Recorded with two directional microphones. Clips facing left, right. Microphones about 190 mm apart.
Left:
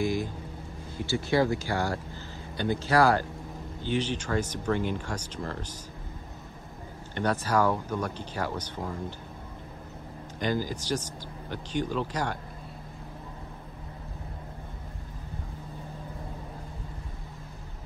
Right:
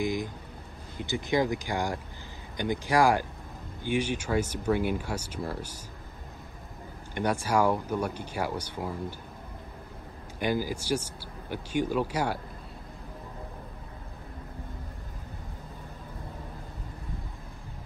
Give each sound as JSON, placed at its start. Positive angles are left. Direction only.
{"t": 0.0, "sound": "speech", "side_deg": -15}
{"t": 7.2, "sound": "speech", "side_deg": -10}
{"t": 10.4, "sound": "speech", "side_deg": -10}